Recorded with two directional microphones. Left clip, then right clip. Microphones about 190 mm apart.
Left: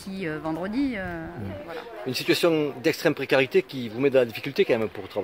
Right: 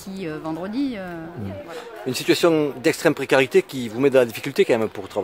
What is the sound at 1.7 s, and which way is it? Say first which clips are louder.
Speech: right 3 dB; 20° right (ahead or behind).